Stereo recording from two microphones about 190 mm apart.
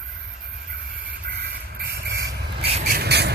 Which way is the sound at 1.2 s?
60° right (ahead or behind).